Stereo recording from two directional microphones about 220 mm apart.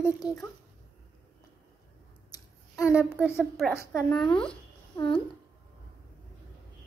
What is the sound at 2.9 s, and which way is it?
Speech, 5° right (ahead or behind).